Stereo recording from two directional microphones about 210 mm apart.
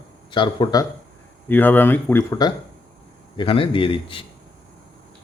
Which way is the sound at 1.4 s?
10° left (ahead or behind).